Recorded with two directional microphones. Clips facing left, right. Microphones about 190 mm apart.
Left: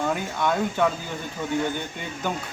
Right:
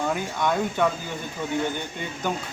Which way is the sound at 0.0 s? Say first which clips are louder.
Even; centre (ahead or behind).